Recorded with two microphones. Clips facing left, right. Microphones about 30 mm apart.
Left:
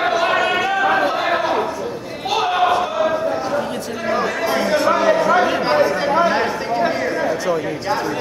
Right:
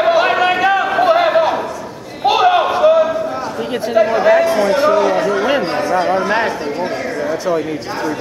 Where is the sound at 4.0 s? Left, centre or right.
Right.